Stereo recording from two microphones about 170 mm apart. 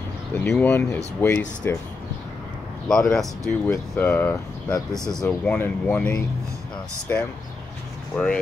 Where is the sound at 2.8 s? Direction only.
5° left (ahead or behind).